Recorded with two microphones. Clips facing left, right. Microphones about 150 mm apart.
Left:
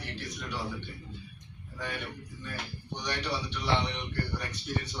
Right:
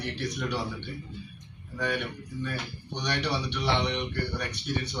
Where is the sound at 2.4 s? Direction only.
70° right (ahead or behind).